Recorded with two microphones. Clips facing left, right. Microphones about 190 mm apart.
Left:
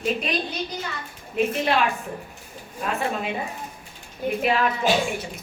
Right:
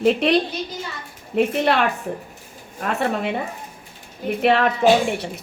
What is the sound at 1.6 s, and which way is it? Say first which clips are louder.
Speech: right 3 dB; 65° right (ahead or behind).